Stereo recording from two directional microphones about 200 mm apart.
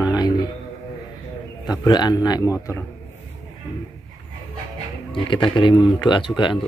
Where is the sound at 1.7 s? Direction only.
20° left (ahead or behind).